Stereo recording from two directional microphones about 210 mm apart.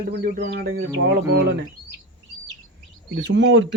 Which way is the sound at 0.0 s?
50° right (ahead or behind).